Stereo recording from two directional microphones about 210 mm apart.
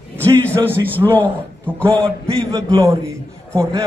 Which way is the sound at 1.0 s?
10° left (ahead or behind).